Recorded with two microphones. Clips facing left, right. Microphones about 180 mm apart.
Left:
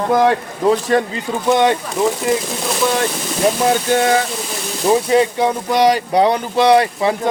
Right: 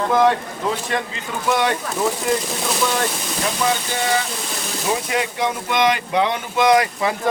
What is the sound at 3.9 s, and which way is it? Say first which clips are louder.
Speech: left 7 dB; 50° left (ahead or behind).